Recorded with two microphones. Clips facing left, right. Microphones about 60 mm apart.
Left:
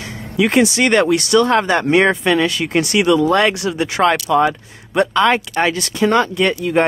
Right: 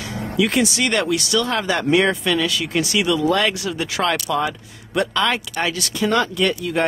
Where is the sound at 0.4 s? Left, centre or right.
Left.